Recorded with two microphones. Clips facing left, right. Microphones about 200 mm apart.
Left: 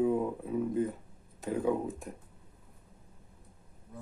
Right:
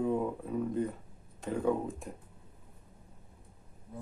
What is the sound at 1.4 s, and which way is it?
Speech, 5° left (ahead or behind).